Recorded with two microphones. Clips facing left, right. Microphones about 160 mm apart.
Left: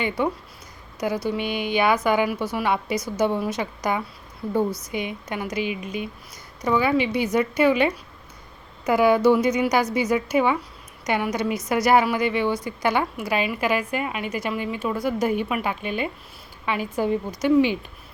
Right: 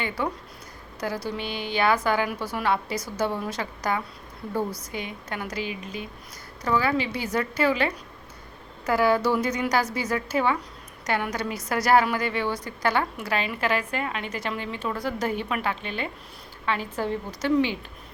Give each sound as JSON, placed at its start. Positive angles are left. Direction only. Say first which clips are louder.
{"t": 0.9, "sound": "a woman's voice", "louder": "left 5 dB", "side_deg": 15}
{"t": 8.9, "sound": "a woman's voice", "louder": "left 5 dB", "side_deg": 15}